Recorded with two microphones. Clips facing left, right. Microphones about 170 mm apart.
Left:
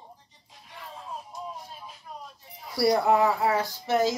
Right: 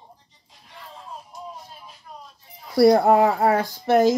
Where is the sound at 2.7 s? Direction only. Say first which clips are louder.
Right 7 dB; 55° right (ahead or behind).